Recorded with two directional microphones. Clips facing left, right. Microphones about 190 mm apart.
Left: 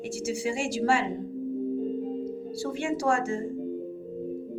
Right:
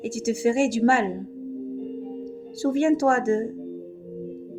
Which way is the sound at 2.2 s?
50° right (ahead or behind).